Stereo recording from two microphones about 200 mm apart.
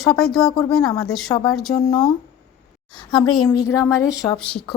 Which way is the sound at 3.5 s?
15° left (ahead or behind).